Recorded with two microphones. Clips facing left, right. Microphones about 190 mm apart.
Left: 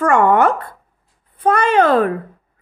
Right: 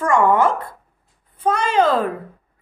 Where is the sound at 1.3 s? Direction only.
60° left (ahead or behind).